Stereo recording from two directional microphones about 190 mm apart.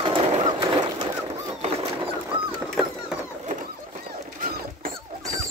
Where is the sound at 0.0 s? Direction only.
25° right (ahead or behind).